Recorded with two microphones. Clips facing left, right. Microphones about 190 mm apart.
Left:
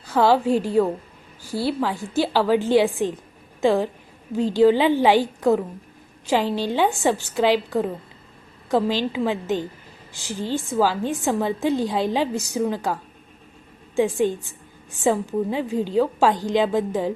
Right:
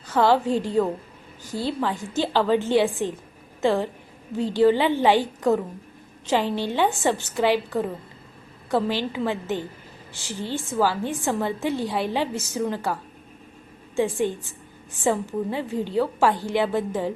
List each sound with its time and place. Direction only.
0.1 s a woman's voice: 10° left (ahead or behind)